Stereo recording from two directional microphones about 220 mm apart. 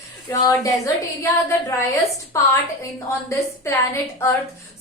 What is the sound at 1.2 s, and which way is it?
A woman's voice, 15° left (ahead or behind).